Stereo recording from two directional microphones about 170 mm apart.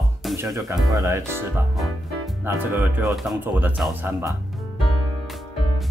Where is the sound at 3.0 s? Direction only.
Centre (ahead or behind).